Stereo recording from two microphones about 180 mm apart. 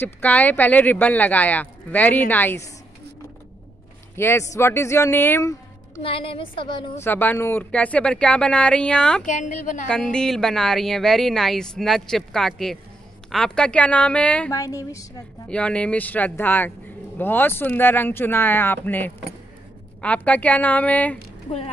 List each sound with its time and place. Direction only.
0.0 s speech: 10° left (ahead or behind)
4.2 s speech: 15° left (ahead or behind)
6.0 s a woman's voice: 30° left (ahead or behind)
7.0 s speech: 10° left (ahead or behind)
9.2 s a woman's voice: 45° left (ahead or behind)
9.8 s speech: 5° left (ahead or behind)
14.5 s speech: 20° left (ahead or behind)
15.4 s speech: 5° left (ahead or behind)